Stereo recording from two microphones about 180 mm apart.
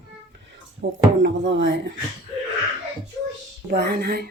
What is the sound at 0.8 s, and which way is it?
Speech, 90° right.